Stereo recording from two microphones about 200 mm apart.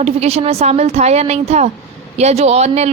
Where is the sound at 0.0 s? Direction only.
30° right (ahead or behind).